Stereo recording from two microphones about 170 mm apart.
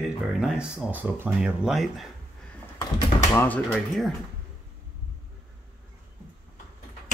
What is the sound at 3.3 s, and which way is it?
Speech, 10° left (ahead or behind).